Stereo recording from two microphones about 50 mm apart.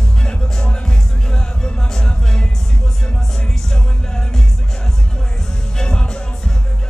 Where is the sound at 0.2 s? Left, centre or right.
Centre.